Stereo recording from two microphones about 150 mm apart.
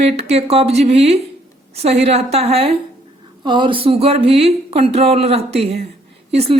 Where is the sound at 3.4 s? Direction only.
30° right (ahead or behind).